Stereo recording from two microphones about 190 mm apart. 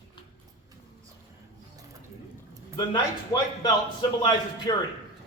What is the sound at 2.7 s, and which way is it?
A man's voice, 25° left (ahead or behind).